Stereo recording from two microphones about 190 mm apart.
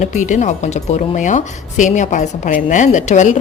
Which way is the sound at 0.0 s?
40° left (ahead or behind).